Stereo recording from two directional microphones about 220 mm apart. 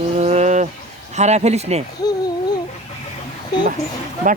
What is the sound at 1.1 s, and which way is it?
Speech, 30° right (ahead or behind).